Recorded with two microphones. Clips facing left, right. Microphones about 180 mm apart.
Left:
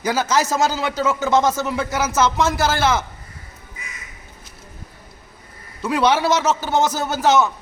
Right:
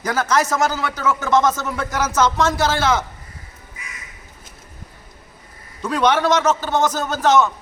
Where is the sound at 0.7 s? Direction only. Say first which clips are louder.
Left 1 dB; 25° left (ahead or behind).